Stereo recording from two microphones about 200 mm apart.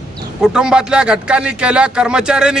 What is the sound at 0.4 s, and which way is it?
A man's voice, 5° right (ahead or behind).